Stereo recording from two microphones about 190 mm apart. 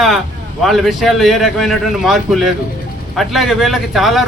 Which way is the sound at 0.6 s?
Centre (ahead or behind).